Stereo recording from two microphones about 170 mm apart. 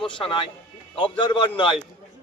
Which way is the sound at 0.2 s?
30° left (ahead or behind).